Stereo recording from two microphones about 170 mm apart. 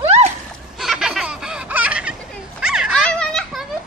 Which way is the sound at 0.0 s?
35° right (ahead or behind).